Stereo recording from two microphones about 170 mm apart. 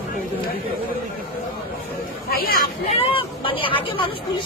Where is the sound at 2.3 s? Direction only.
60° left (ahead or behind).